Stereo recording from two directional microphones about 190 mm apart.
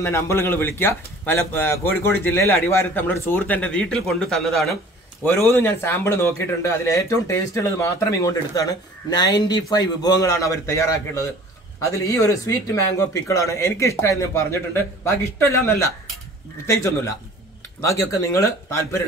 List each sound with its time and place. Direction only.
0.0 s speech: 15° left (ahead or behind)
5.2 s speech: 10° left (ahead or behind)